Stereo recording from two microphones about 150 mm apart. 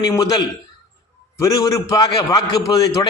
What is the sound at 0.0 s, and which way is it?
A man's voice, 25° left (ahead or behind).